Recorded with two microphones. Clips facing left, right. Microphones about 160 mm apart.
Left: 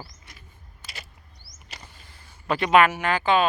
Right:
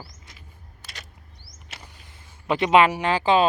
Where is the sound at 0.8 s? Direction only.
5° left (ahead or behind).